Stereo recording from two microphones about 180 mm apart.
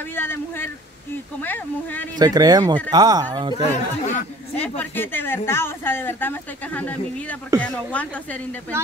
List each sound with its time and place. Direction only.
0.1 s a woman's voice: 10° left (ahead or behind)
2.1 s speech: 20° right (ahead or behind)
3.5 s speech: 40° left (ahead or behind)
4.6 s a woman's voice: 10° left (ahead or behind)